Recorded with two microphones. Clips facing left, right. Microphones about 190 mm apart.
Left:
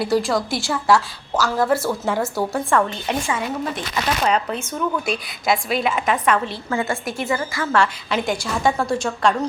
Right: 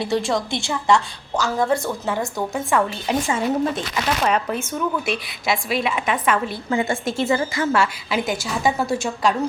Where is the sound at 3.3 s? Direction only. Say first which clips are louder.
Right 4 dB; 25° right (ahead or behind).